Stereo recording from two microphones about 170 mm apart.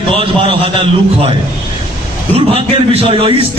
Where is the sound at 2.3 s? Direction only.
35° right (ahead or behind).